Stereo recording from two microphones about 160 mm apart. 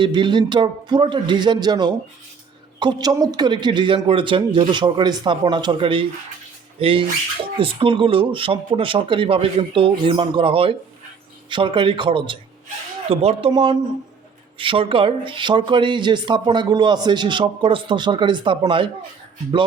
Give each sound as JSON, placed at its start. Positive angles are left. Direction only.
{"t": 0.0, "sound": "speech", "side_deg": -30}